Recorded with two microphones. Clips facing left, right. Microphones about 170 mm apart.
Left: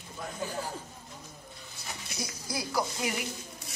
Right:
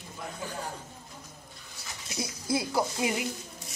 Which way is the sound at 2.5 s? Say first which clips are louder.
Right 4 dB; 25° right (ahead or behind).